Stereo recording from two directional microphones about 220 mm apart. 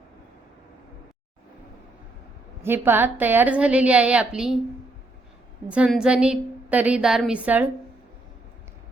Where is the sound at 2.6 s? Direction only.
10° right (ahead or behind).